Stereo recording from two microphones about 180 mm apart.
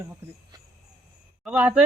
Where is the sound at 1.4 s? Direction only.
5° right (ahead or behind).